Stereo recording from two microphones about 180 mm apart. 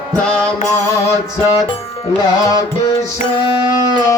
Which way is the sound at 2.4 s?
20° left (ahead or behind).